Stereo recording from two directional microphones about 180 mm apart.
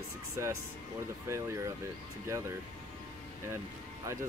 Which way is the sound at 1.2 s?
15° right (ahead or behind).